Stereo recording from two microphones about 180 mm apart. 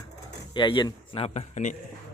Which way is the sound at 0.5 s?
25° left (ahead or behind).